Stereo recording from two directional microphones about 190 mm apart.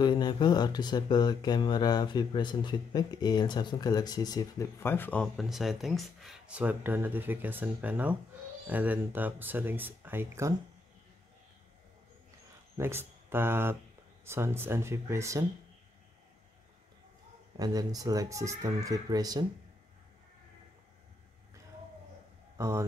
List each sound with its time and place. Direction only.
0.0 s speech: 25° left (ahead or behind); by 10.5 s 15° right (ahead or behind)
12.7 s speech: 10° right (ahead or behind)
17.6 s speech: 20° right (ahead or behind)
22.6 s speech: 15° right (ahead or behind)